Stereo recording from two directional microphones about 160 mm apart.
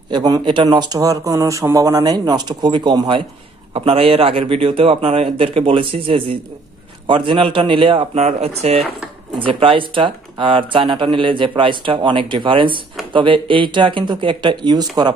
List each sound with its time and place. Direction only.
0.1 s speech: 25° right (ahead or behind)